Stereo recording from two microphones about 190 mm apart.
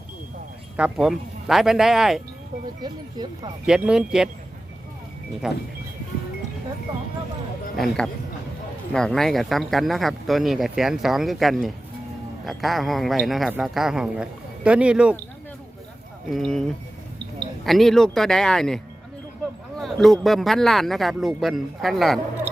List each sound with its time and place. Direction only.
0.8 s speech: centre (ahead or behind)
2.8 s speech: 20° right (ahead or behind)
3.7 s speech: 5° right (ahead or behind)
5.4 s speech: 5° right (ahead or behind)
7.8 s speech: centre (ahead or behind)
16.3 s speech: centre (ahead or behind)